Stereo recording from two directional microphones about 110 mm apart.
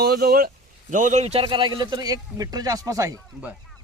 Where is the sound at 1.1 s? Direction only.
70° right (ahead or behind).